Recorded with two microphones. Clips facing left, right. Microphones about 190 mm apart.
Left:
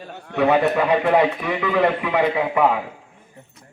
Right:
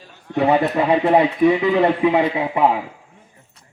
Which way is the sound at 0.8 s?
25° right (ahead or behind).